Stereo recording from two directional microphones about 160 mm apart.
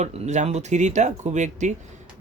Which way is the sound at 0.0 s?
45° right (ahead or behind).